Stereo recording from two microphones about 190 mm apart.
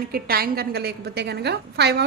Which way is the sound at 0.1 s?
55° right (ahead or behind).